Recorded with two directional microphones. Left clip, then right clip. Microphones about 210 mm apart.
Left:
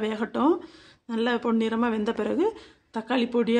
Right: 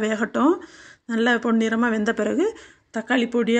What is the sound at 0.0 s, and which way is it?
Speech, 10° right (ahead or behind).